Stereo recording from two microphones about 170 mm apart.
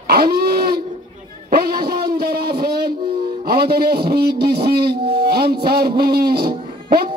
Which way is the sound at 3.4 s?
65° right (ahead or behind).